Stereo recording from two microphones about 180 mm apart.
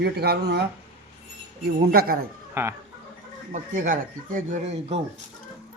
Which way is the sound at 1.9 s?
55° right (ahead or behind).